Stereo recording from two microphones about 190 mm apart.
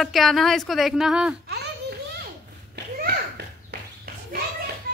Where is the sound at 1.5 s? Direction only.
60° right (ahead or behind).